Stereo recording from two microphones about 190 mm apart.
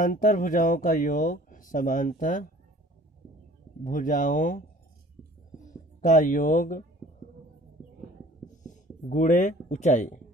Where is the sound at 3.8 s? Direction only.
45° left (ahead or behind).